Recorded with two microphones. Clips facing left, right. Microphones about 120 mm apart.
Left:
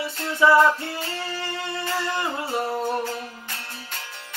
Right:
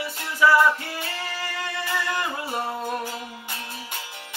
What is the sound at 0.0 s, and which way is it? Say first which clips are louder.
Music: left 1 dB; 25° left (ahead or behind).